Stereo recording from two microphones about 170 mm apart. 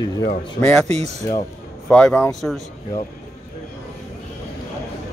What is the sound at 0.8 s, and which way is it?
Speech, 40° right (ahead or behind).